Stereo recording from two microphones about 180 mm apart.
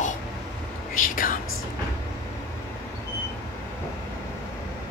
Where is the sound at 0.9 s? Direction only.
50° left (ahead or behind).